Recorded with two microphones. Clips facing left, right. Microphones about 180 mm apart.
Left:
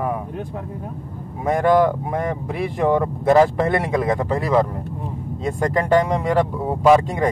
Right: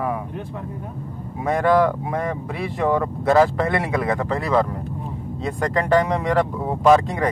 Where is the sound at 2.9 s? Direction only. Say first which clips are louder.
Left 2 dB; 20° left (ahead or behind).